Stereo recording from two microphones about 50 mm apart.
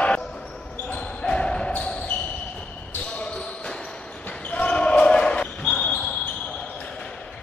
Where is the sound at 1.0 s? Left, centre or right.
Centre.